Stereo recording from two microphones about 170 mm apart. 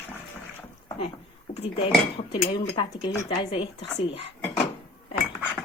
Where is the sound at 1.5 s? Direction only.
35° left (ahead or behind).